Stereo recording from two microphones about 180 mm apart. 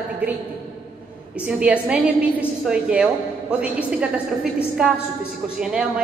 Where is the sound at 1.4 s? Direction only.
5° right (ahead or behind).